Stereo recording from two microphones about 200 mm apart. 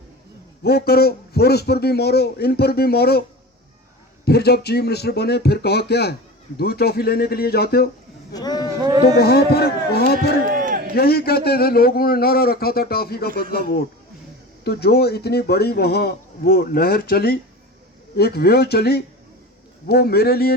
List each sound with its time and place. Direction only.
0.6 s speech: 50° left (ahead or behind)
4.3 s speech: 55° left (ahead or behind)
8.3 s a sound: 20° left (ahead or behind)
9.1 s speech: 50° left (ahead or behind)
10.5 s a sound: 45° right (ahead or behind)
10.9 s speech: 50° left (ahead or behind)